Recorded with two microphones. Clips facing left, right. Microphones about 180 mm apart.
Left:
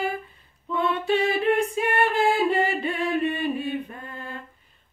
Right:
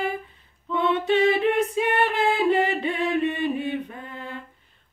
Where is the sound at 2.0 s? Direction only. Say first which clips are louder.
Left 3 dB; 20° right (ahead or behind).